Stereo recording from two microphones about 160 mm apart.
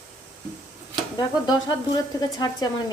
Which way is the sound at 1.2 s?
25° left (ahead or behind).